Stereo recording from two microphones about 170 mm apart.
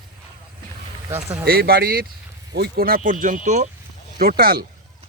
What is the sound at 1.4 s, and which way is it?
Speech, 60° right (ahead or behind).